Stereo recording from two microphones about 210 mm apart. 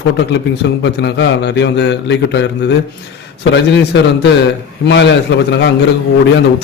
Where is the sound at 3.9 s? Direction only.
60° left (ahead or behind).